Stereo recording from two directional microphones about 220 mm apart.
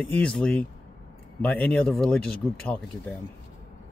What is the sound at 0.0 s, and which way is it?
Speech, 5° left (ahead or behind).